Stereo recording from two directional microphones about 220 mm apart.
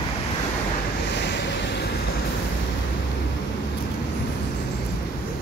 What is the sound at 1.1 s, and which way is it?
Waves, 50° left (ahead or behind).